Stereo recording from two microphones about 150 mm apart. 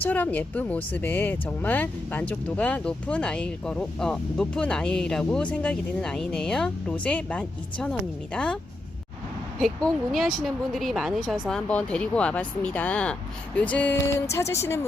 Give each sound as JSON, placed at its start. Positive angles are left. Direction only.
{"t": 0.0, "sound": "speech", "side_deg": 10}
{"t": 9.6, "sound": "speech", "side_deg": 5}